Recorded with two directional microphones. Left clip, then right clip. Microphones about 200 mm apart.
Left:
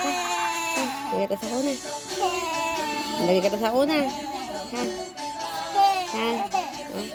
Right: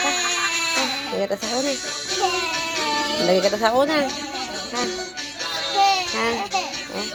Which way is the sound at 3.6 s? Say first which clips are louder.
Right 4 dB; 40° left (ahead or behind).